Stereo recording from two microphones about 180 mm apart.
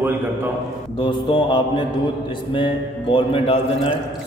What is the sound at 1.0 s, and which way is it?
A man's voice, 25° left (ahead or behind).